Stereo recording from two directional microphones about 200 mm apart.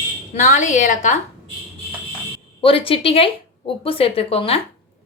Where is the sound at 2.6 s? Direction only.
25° left (ahead or behind).